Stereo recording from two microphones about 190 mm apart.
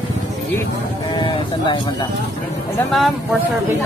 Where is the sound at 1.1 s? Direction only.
25° left (ahead or behind).